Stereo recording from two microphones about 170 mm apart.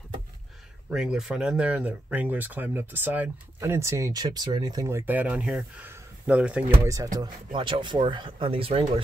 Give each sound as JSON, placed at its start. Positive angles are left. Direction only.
{"t": 0.8, "sound": "speech", "side_deg": -5}
{"t": 6.8, "sound": "speech", "side_deg": -20}